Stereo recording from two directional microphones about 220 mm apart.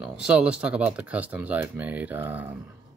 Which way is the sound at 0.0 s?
5° right (ahead or behind).